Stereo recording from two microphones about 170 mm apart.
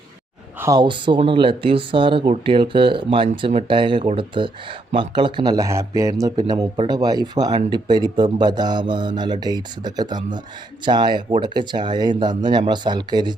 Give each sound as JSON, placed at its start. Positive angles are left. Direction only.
{"t": 0.6, "sound": "speech", "side_deg": -25}